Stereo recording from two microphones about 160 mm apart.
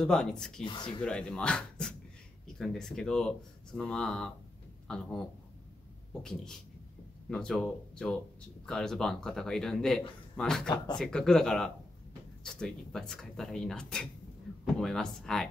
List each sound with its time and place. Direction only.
0.0 s a man's voice: 5° left (ahead or behind)
0.7 s speech: 30° left (ahead or behind)
1.0 s a man's voice: 5° left (ahead or behind)
6.2 s a man's voice: 5° left (ahead or behind)